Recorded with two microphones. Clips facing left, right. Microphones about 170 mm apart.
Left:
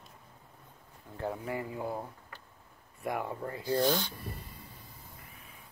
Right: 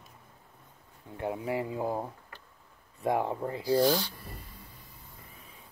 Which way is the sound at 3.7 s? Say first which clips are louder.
Right 3 dB; centre (ahead or behind).